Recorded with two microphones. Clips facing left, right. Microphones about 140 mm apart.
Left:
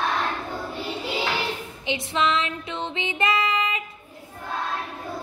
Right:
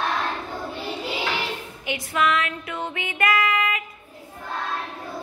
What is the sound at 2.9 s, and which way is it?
Female singing, 25° left (ahead or behind).